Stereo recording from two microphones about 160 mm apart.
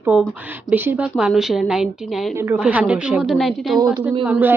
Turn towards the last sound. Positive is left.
turn(degrees=-10)  # may be behind; listen again after turning